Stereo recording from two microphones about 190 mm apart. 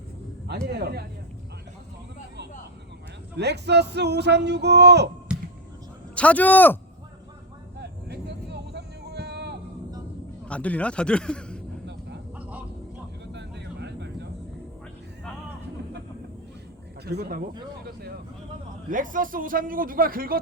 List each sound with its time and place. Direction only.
0.4 s speech: 60° right (ahead or behind)
3.3 s speech: 65° right (ahead or behind)
6.1 s a man's voice: 10° left (ahead or behind)
7.8 s vehicle: 60° right (ahead or behind)
10.5 s a man's voice: 5° left (ahead or behind)
12.4 s a sound: 10° right (ahead or behind)
13.3 s vehicle: 65° right (ahead or behind)
17.1 s speech: 55° right (ahead or behind)
18.9 s a man's voice: 45° right (ahead or behind)